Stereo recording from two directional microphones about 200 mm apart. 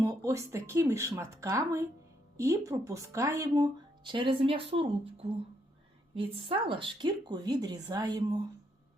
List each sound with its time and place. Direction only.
0.0 s speech: 15° right (ahead or behind)